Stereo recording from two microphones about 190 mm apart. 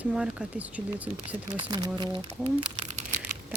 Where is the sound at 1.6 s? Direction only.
25° right (ahead or behind).